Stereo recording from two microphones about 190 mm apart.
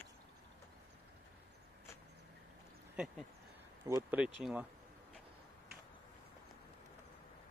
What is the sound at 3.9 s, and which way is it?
Speech, 10° right (ahead or behind).